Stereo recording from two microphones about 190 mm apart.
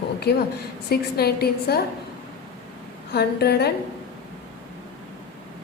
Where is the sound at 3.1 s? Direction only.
60° left (ahead or behind).